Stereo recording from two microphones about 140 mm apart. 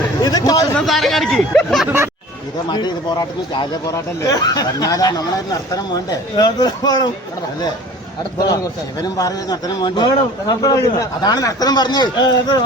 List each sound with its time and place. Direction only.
0.2 s a man's voice: 30° left (ahead or behind)
0.8 s speech: centre (ahead or behind)
2.6 s a man's voice: 30° left (ahead or behind)
9.0 s a man's voice: 25° left (ahead or behind)